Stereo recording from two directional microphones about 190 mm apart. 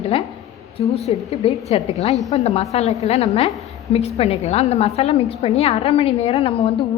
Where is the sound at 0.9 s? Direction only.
35° left (ahead or behind).